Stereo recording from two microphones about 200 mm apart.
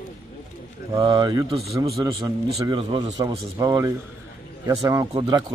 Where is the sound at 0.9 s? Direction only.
20° right (ahead or behind).